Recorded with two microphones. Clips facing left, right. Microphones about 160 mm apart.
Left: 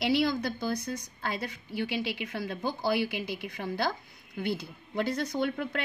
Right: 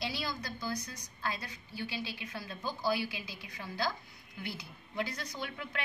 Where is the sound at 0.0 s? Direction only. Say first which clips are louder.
Left 12 dB; 65° left (ahead or behind).